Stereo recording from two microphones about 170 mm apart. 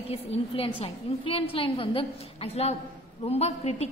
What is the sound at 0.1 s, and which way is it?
A woman's voice, 35° left (ahead or behind).